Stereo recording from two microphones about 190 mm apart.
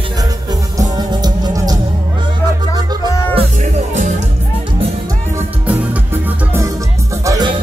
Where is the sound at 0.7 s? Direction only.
20° right (ahead or behind).